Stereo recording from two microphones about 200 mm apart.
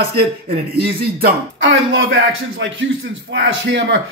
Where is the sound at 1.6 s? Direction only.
65° right (ahead or behind).